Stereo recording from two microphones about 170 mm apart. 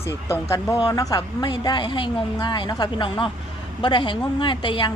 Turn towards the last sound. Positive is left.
turn(degrees=30)  # may be behind; listen again after turning